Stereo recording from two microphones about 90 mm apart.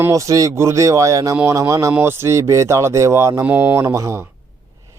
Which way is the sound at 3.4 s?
20° right (ahead or behind).